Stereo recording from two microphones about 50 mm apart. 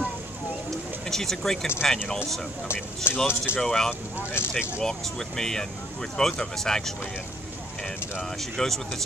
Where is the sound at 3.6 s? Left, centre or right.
Centre.